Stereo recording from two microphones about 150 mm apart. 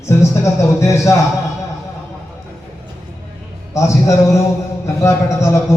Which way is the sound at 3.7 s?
20° left (ahead or behind).